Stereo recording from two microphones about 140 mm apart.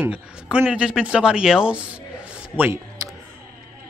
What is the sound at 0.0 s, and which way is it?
Speech, 10° right (ahead or behind).